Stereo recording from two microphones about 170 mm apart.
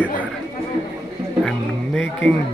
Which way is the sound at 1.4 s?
5° left (ahead or behind).